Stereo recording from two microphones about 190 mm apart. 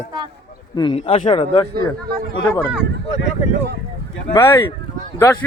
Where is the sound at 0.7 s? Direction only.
25° left (ahead or behind).